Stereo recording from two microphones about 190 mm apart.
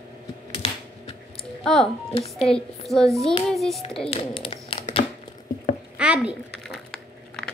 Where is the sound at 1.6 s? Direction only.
Centre (ahead or behind).